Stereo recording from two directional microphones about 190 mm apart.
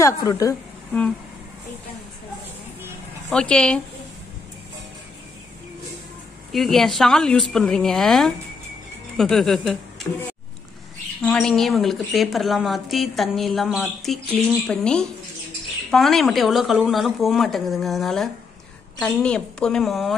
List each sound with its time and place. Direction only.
0.0 s a woman's voice: 20° left (ahead or behind)
3.3 s a woman's voice: 5° left (ahead or behind)
6.5 s a woman's voice: centre (ahead or behind)
11.2 s a woman's voice: centre (ahead or behind)